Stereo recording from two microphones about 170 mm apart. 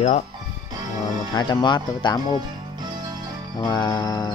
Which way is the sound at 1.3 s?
25° left (ahead or behind).